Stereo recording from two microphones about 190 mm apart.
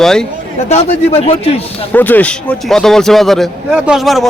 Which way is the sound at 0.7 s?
35° left (ahead or behind).